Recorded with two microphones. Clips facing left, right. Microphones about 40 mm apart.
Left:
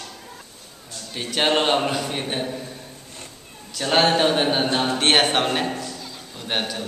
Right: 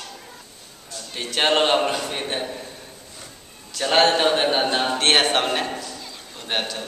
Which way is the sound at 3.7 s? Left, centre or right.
Centre.